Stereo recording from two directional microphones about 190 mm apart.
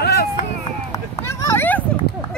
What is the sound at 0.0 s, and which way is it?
Chop, 60° left (ahead or behind).